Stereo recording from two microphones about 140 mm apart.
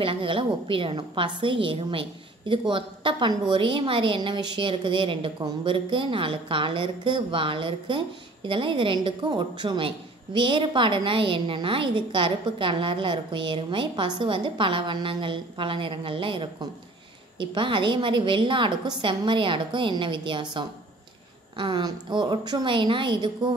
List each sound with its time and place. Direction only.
0.0 s a woman's voice: 40° right (ahead or behind)